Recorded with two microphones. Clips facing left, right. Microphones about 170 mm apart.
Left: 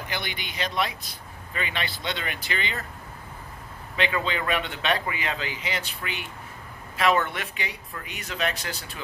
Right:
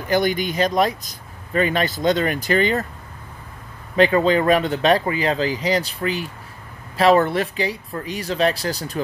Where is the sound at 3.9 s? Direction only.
40° right (ahead or behind).